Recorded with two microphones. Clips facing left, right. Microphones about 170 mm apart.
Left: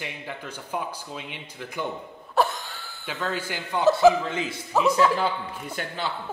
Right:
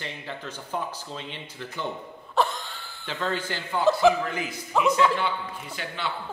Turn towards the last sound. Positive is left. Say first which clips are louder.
# left 2 dB
turn(degrees=40)  # may be behind; listen again after turning